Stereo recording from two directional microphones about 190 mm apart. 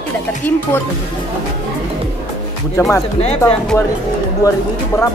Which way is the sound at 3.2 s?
35° left (ahead or behind).